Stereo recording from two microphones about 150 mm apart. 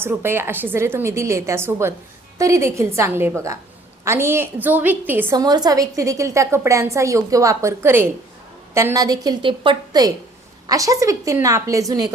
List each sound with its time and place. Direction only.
0.0 s a woman's voice: 15° right (ahead or behind)